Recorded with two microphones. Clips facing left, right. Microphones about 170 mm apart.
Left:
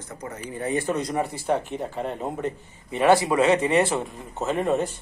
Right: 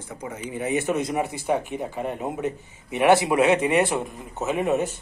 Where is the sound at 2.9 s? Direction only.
15° right (ahead or behind).